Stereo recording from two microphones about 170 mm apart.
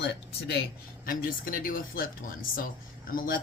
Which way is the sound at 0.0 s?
85° left.